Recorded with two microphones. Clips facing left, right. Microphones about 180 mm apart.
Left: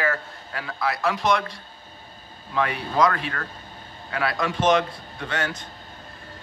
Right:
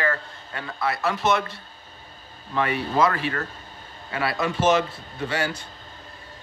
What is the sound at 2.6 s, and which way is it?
A man's voice, centre (ahead or behind).